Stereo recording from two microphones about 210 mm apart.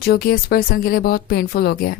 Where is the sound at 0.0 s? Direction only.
45° left (ahead or behind).